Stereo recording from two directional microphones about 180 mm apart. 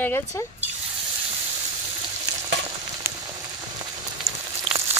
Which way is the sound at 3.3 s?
20° right (ahead or behind).